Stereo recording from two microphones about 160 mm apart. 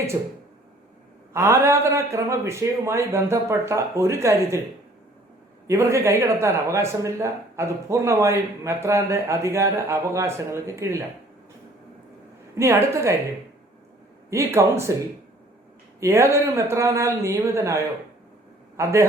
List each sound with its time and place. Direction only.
1.3 s a man's voice: 15° right (ahead or behind)
5.6 s a man's voice: 15° right (ahead or behind)
12.5 s a man's voice: 15° right (ahead or behind)
14.3 s a man's voice: 15° right (ahead or behind)
16.0 s a man's voice: 15° right (ahead or behind)